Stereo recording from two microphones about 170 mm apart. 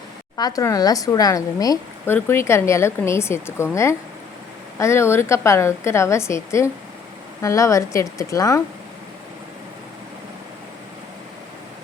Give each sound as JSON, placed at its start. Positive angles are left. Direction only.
{"t": 0.3, "sound": "a woman's voice", "side_deg": 20}
{"t": 4.8, "sound": "a woman's voice", "side_deg": 15}